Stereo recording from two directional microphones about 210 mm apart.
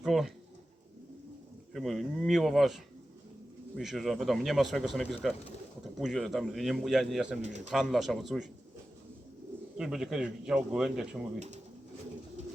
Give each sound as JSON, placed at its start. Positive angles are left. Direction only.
{"t": 0.0, "sound": "pigeon", "side_deg": 0}
{"t": 1.7, "sound": "speech", "side_deg": 0}
{"t": 7.4, "sound": "speech", "side_deg": -35}
{"t": 7.7, "sound": "speech", "side_deg": 0}
{"t": 9.7, "sound": "speech", "side_deg": 0}
{"t": 11.3, "sound": "speech", "side_deg": -35}